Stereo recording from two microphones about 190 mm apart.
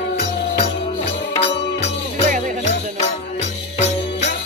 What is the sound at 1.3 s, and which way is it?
Music, 30° left (ahead or behind).